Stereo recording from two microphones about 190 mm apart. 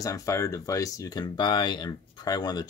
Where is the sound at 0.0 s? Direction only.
15° left (ahead or behind).